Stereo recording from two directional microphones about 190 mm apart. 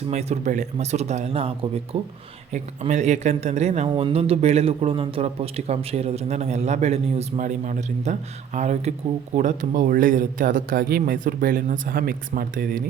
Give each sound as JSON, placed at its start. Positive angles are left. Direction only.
{"t": 0.1, "sound": "a man's voice", "side_deg": -35}